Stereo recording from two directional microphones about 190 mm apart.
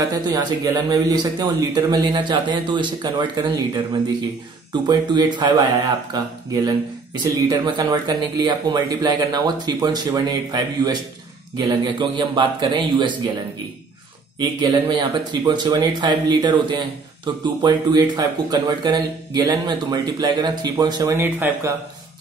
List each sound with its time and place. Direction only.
0.1 s speech: 20° right (ahead or behind)
4.8 s speech: 20° right (ahead or behind)
14.4 s speech: 20° right (ahead or behind)